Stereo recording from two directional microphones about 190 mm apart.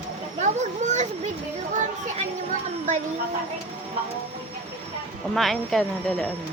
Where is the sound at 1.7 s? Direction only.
40° right (ahead or behind).